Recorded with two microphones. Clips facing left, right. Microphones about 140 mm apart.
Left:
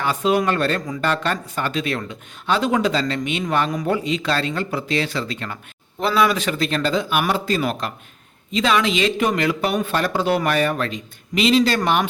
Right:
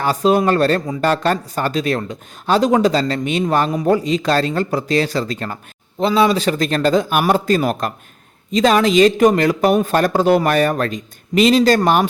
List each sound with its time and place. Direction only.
0.0 s speech: 35° right (ahead or behind)
6.0 s a man's voice: 25° right (ahead or behind)